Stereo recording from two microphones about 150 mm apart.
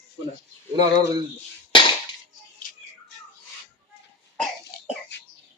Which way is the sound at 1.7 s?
30° left (ahead or behind).